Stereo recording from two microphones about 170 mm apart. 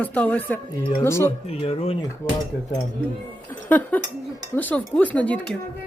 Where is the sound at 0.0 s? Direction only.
10° left (ahead or behind).